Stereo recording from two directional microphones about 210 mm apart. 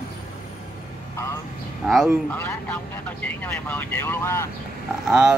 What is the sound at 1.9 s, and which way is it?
Speech, centre (ahead or behind).